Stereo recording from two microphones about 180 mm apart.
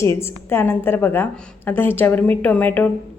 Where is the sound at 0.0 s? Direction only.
15° left (ahead or behind).